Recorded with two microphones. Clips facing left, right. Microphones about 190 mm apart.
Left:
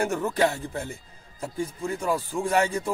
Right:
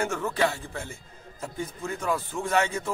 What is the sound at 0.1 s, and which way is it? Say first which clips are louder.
Speech: left 3 dB; 20° left (ahead or behind).